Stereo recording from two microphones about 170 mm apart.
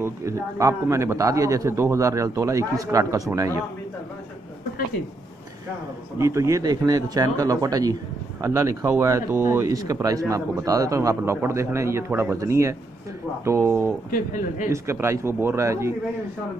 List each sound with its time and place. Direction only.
0.0 s speech: 15° right (ahead or behind)
6.1 s a man's voice: 20° right (ahead or behind)
14.1 s a man's voice: 50° left (ahead or behind)
14.7 s a man's voice: 15° right (ahead or behind)